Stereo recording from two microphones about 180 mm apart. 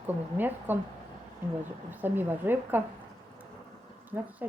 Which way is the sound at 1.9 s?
10° right (ahead or behind).